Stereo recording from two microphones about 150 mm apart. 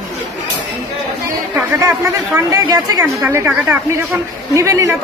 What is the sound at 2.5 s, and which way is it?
Speech, 25° right (ahead or behind).